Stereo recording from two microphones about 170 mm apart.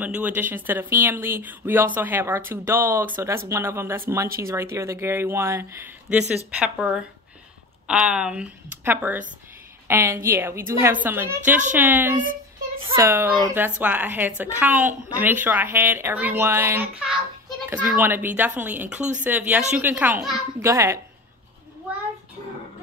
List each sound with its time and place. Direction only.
0.0 s a woman's voice: 10° right (ahead or behind)